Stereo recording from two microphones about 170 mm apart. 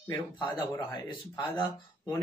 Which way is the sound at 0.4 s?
30° left (ahead or behind).